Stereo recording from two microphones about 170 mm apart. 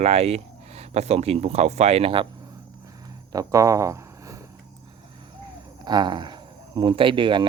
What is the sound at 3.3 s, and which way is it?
Speech, 20° right (ahead or behind).